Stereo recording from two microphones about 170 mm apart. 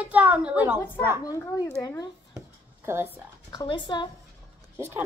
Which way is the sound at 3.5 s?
30° left (ahead or behind).